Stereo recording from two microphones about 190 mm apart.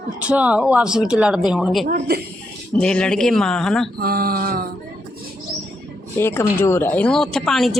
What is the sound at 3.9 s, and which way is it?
Speech, 50° right (ahead or behind).